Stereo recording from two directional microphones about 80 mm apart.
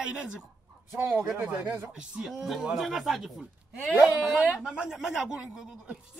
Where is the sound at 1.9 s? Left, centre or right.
Centre.